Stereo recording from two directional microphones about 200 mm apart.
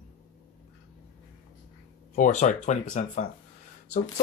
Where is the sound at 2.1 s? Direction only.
40° left (ahead or behind).